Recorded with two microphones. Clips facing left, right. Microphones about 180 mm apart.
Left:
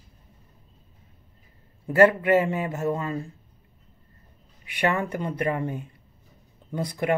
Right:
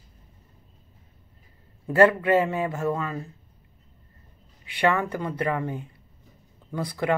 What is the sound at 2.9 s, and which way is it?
Speech, 25° left (ahead or behind).